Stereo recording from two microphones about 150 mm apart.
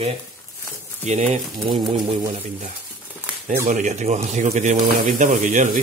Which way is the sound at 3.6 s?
50° right (ahead or behind).